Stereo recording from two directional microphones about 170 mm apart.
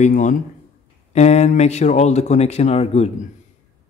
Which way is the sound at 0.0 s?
50° left (ahead or behind).